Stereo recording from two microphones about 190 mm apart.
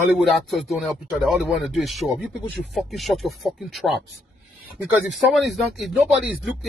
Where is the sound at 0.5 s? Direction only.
Centre (ahead or behind).